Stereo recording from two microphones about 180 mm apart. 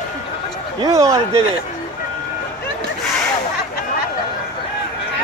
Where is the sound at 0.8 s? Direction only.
15° right (ahead or behind).